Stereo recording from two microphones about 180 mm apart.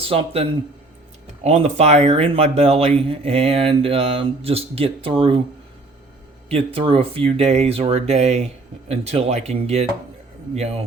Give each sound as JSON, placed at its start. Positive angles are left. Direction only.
{"t": 0.0, "sound": "speech", "side_deg": -30}
{"t": 1.5, "sound": "speech", "side_deg": -35}
{"t": 6.5, "sound": "speech", "side_deg": -30}